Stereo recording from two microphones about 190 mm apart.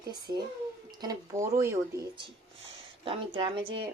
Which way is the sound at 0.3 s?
15° right (ahead or behind).